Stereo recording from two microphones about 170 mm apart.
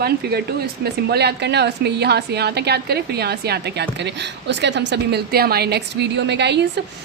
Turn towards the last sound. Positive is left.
turn(degrees=-90)